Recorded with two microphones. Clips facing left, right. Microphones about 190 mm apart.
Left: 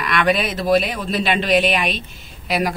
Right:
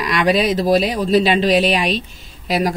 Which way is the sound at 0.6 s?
40° right (ahead or behind).